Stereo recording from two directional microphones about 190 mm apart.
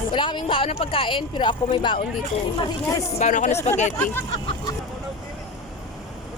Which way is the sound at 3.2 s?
40° left (ahead or behind).